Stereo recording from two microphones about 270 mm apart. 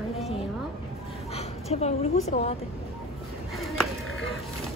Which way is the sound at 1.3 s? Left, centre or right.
Left.